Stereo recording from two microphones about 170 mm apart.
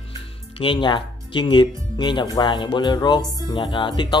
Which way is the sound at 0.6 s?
30° left (ahead or behind).